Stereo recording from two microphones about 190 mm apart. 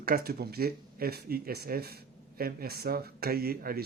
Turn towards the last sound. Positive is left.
turn(degrees=-55)  # may be behind; listen again after turning